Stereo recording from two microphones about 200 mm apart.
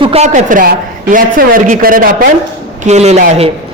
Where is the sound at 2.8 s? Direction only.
35° right (ahead or behind).